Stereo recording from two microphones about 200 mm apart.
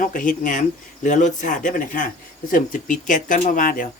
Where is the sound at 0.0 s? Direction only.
40° left (ahead or behind).